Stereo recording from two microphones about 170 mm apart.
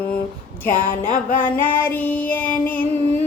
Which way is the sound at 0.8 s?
55° left (ahead or behind).